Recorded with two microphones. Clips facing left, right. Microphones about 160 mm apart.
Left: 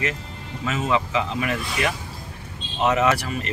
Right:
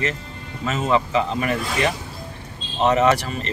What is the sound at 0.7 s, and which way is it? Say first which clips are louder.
Speech: right 3 dB; 40° right (ahead or behind).